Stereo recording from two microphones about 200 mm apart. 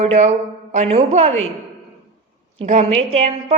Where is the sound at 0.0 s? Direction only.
35° right (ahead or behind).